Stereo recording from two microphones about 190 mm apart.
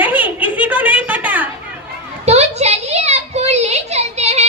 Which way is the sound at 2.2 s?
35° right (ahead or behind).